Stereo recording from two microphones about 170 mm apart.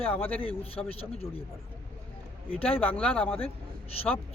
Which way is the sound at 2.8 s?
10° left (ahead or behind).